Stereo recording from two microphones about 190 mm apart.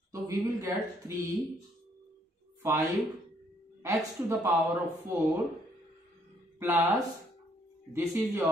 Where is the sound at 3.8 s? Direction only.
15° right (ahead or behind).